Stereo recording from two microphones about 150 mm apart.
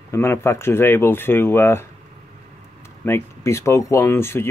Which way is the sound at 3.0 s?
15° left (ahead or behind).